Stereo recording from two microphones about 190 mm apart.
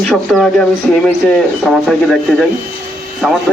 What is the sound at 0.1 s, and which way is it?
Speech, 5° left (ahead or behind).